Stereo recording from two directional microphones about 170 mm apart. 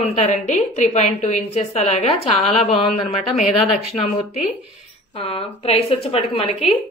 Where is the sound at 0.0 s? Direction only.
40° left (ahead or behind).